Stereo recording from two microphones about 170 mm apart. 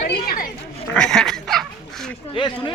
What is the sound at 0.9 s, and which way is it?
Speech, 5° left (ahead or behind).